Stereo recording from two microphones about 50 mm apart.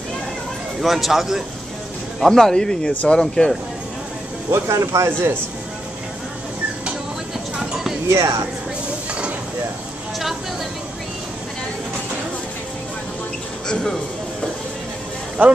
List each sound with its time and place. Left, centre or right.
0.7 s a man's voice: centre
2.1 s speech: centre
4.5 s speech: right
7.5 s clip-clop: centre
8.1 s speech: right
15.4 s speech: right